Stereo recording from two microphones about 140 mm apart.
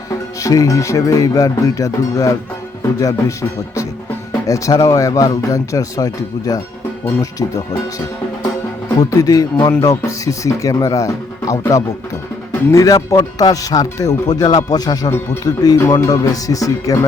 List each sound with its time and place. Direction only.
0.3 s speech: 25° left (ahead or behind)